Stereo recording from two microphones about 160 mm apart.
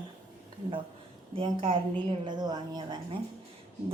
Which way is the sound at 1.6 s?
30° right (ahead or behind).